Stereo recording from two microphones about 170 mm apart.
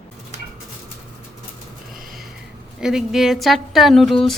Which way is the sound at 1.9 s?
55° right (ahead or behind).